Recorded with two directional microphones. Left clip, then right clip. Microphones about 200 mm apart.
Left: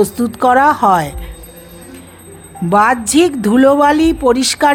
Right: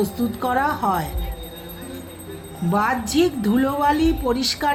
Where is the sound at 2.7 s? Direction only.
55° left (ahead or behind).